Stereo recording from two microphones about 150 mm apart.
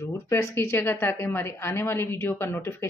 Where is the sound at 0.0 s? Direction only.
15° left (ahead or behind).